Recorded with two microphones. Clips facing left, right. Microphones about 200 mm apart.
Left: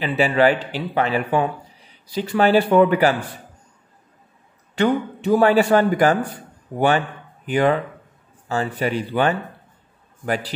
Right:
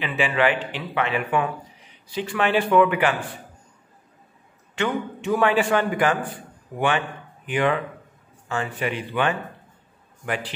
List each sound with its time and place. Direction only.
0.0 s speech: 40° left (ahead or behind)
4.7 s speech: 35° left (ahead or behind)